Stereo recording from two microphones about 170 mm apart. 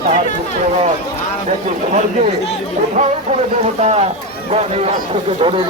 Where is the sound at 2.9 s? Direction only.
40° right (ahead or behind).